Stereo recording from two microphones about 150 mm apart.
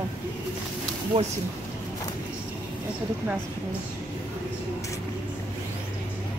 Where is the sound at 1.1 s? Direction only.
40° right (ahead or behind).